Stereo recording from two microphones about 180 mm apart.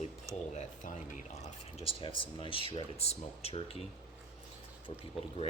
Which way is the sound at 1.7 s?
30° left (ahead or behind).